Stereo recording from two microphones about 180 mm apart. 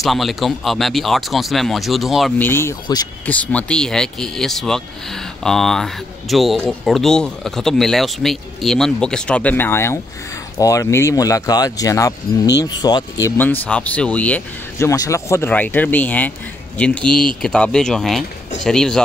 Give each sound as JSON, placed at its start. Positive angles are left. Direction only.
{"t": 0.0, "sound": "speech", "side_deg": 0}
{"t": 2.3, "sound": "speech", "side_deg": 10}
{"t": 3.3, "sound": "speech", "side_deg": 5}
{"t": 13.4, "sound": "speech", "side_deg": 10}